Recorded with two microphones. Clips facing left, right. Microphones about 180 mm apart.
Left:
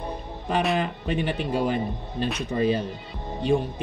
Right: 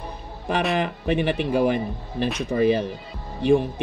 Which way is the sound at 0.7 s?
65° right (ahead or behind).